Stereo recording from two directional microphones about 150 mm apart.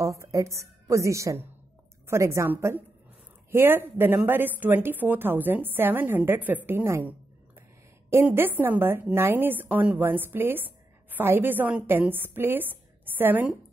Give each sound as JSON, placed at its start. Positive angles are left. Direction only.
{"t": 0.0, "sound": "a woman's voice", "side_deg": -20}